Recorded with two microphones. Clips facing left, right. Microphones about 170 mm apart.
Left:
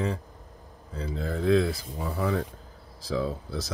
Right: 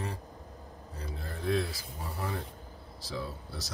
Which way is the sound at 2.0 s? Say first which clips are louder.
Left 9 dB; 90° left.